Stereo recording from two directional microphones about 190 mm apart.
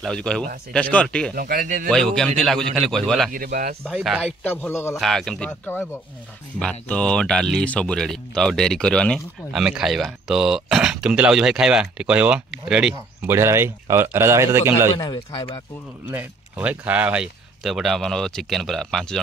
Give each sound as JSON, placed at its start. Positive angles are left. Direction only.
{"t": 0.0, "sound": "speech", "side_deg": 5}
{"t": 1.3, "sound": "speech", "side_deg": -50}
{"t": 1.9, "sound": "speech", "side_deg": 5}
{"t": 3.3, "sound": "speech", "side_deg": -50}
{"t": 3.8, "sound": "speech", "side_deg": 0}
{"t": 15.0, "sound": "speech", "side_deg": 25}
{"t": 16.1, "sound": "speech", "side_deg": -10}